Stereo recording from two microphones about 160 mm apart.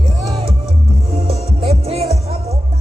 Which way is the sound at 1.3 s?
40° right (ahead or behind).